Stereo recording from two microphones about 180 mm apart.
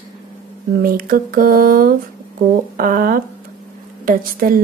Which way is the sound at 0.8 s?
50° right (ahead or behind).